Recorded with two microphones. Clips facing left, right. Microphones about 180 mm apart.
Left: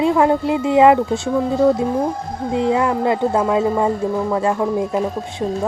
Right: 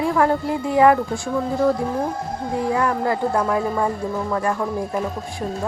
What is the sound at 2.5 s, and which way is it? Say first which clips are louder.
Speech: left 4 dB; 20° left (ahead or behind).